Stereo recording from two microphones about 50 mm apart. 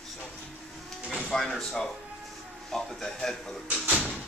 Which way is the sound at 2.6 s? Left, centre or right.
Centre.